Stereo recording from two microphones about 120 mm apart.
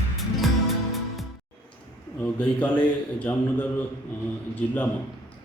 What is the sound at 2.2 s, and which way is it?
A man's voice, 10° left (ahead or behind).